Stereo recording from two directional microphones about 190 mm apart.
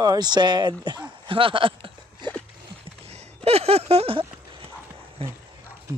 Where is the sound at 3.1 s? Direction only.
35° right (ahead or behind).